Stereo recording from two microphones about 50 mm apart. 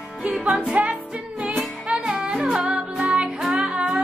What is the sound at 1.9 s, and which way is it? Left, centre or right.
Music, centre.